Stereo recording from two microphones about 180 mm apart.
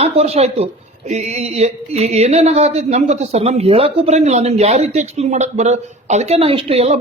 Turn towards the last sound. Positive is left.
turn(degrees=-35)  # may be behind; listen again after turning